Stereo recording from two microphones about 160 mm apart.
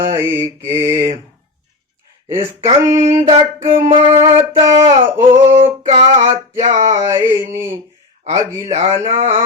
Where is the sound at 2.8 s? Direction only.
20° right (ahead or behind).